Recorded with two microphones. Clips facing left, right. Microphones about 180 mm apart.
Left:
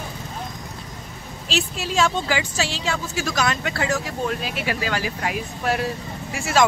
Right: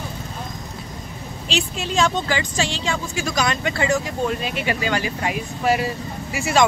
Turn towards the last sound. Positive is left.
turn(degrees=0)  # may be behind; listen again after turning